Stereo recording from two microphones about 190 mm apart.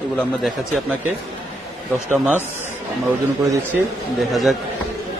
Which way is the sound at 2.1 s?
10° right (ahead or behind).